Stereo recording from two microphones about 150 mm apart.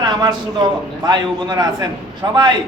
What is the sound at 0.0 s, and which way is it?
A man's voice, 30° right (ahead or behind).